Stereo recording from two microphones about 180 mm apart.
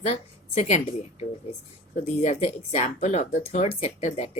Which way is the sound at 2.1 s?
40° left (ahead or behind).